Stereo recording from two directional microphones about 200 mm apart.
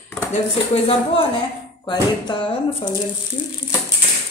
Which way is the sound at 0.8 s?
25° left (ahead or behind).